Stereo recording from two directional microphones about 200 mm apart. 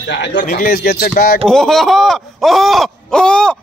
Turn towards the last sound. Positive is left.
turn(degrees=5)  # may be behind; listen again after turning